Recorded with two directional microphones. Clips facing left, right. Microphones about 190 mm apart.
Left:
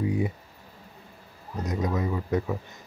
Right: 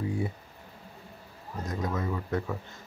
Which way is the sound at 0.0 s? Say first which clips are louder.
Left 4 dB; 20° left (ahead or behind).